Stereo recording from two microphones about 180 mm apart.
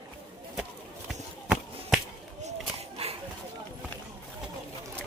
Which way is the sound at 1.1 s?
5° right (ahead or behind).